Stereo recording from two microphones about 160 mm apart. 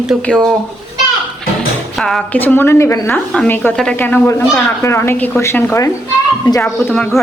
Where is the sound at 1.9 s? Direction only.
5° left (ahead or behind); by 6.7 s 20° left (ahead or behind).